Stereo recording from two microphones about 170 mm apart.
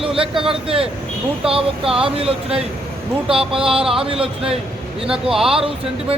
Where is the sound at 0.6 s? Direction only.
35° right (ahead or behind).